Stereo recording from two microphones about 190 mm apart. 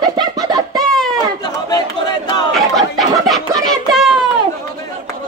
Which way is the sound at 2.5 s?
Centre (ahead or behind).